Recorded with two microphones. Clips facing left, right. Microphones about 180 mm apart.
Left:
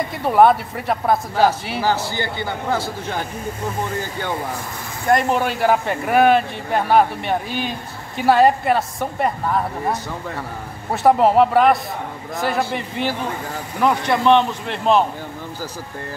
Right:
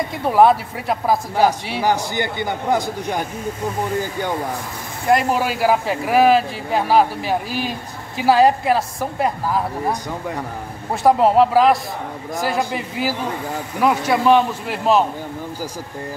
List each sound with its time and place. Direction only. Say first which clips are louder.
0.2 s speech: even; centre (ahead or behind)
1.8 s a man's voice: right 2 dB; 15° right (ahead or behind)
5.0 s speech: even; 5° right (ahead or behind)